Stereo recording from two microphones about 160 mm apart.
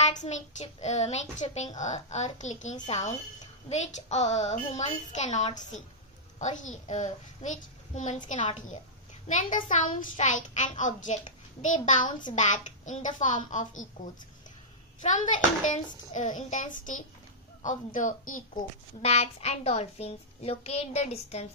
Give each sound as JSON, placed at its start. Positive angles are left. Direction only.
{"t": 0.0, "sound": "a child's voice", "side_deg": 45}
{"t": 15.0, "sound": "a child's voice", "side_deg": 50}